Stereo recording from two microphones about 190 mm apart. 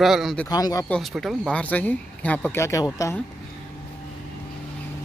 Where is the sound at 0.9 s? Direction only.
Centre (ahead or behind); by 3.2 s 15° left (ahead or behind).